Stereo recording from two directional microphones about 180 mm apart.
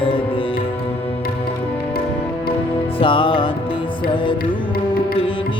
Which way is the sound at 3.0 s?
30° left (ahead or behind).